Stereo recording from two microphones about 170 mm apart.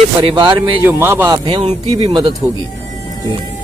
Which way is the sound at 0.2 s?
25° right (ahead or behind).